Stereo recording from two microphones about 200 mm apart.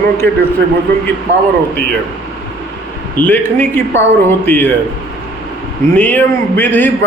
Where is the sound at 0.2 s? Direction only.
10° left (ahead or behind).